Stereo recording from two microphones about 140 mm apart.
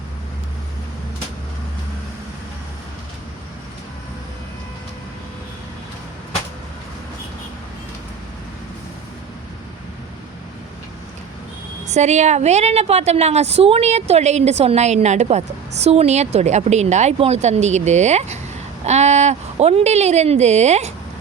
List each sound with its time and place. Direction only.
11.9 s a woman's voice: 55° right (ahead or behind)